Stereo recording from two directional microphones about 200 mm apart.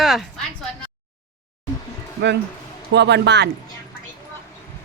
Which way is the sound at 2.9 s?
60° right (ahead or behind).